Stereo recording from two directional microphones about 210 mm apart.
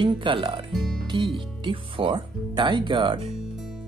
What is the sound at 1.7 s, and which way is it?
Speech, 25° right (ahead or behind).